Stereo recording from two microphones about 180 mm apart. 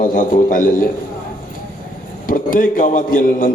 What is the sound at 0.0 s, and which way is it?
Speech, 50° left (ahead or behind).